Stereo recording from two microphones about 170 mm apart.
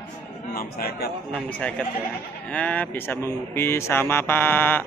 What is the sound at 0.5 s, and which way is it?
Speech, 60° left (ahead or behind).